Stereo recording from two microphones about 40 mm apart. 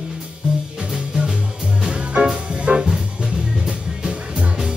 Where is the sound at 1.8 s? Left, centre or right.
Right.